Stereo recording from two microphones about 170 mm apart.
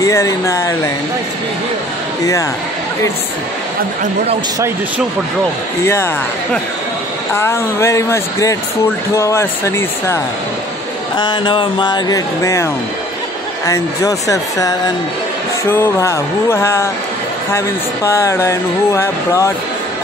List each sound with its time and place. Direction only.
0.0 s speech: 15° left (ahead or behind)
7.3 s speech: 15° left (ahead or behind)
11.1 s speech: 30° left (ahead or behind)
13.7 s speech: 20° left (ahead or behind)